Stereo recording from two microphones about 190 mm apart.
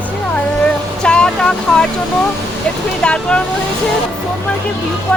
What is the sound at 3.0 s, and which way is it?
Speech, 5° left (ahead or behind).